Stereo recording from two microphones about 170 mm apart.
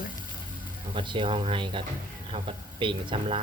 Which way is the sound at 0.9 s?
30° right (ahead or behind).